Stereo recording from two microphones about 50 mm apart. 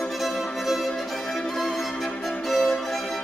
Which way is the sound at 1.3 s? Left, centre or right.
Centre.